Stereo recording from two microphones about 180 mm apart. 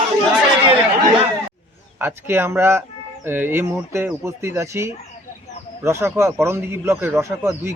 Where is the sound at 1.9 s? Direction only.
15° right (ahead or behind).